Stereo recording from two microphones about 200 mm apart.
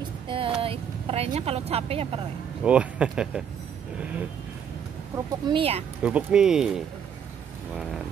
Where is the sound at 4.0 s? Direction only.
10° right (ahead or behind).